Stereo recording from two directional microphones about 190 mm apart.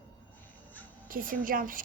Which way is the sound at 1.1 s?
45° right (ahead or behind).